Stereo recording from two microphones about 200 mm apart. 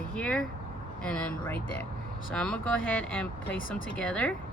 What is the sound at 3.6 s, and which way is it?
Speech, 45° left (ahead or behind).